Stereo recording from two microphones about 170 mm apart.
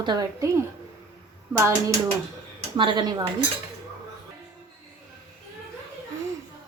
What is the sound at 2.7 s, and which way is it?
Speech, 30° right (ahead or behind).